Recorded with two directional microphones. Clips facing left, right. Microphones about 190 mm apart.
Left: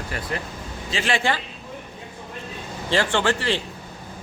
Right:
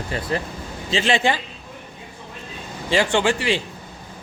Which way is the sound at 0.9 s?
25° right (ahead or behind).